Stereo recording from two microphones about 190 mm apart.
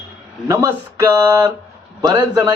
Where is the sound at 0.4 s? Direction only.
15° right (ahead or behind).